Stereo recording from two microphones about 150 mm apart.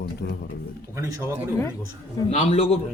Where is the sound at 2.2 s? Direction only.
45° left (ahead or behind).